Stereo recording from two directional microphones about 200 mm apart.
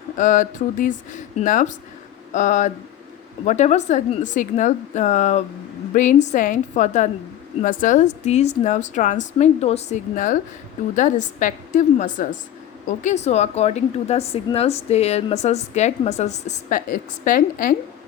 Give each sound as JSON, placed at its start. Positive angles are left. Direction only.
{"t": 0.2, "sound": "a woman's voice", "side_deg": 40}